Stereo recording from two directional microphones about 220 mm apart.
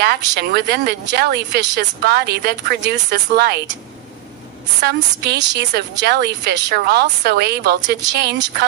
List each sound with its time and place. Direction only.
0.0 s speech: 50° right (ahead or behind)
5.2 s speech: 50° right (ahead or behind)